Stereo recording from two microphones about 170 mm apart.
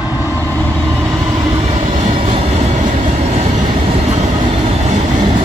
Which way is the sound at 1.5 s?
40° right (ahead or behind).